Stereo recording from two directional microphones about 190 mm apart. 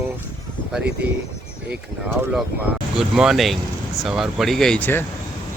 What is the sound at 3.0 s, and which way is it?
Speech, centre (ahead or behind).